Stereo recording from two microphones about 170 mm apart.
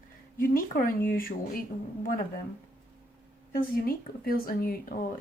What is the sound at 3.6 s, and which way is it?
A woman's voice, 60° left (ahead or behind).